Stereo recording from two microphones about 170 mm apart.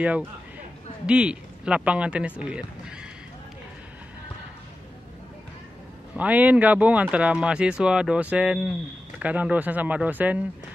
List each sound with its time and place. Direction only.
0.0 s speech: 10° right (ahead or behind)
6.1 s speech: 10° right (ahead or behind)